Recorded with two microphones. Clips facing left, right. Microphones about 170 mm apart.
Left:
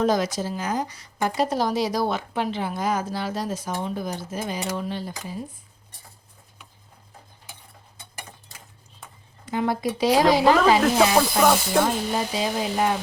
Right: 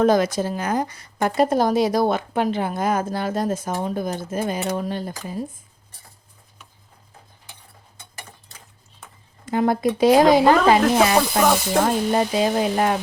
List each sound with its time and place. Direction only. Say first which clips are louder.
0.0 s a woman's voice: right 5 dB; 55° right (ahead or behind)
9.5 s a woman's voice: right 5 dB; 50° right (ahead or behind)
10.8 s speech: right 2 dB; centre (ahead or behind)
12.1 s speech: right 6 dB; 55° right (ahead or behind)